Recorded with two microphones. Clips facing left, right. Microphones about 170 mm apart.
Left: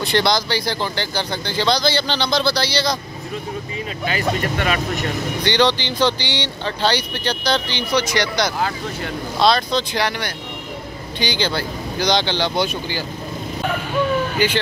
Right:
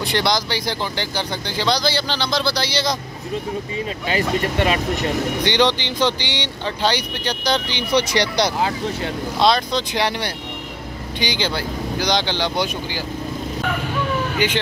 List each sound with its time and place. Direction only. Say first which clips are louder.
0.0 s speech: left 2 dB; 15° right (ahead or behind)
4.1 s speech: right 1 dB; 25° right (ahead or behind)
7.9 s speech: right 1 dB; 30° right (ahead or behind); by 10.0 s 15° right (ahead or behind)
11.1 s speech: left 1 dB; 15° right (ahead or behind)
14.4 s speech: left 1 dB; 20° right (ahead or behind)